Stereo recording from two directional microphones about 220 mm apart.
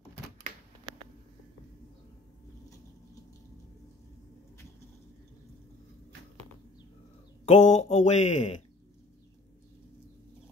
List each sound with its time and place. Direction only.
7.4 s speech: 30° left (ahead or behind)